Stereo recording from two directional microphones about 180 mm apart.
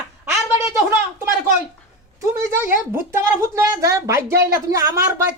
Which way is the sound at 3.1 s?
15° right (ahead or behind).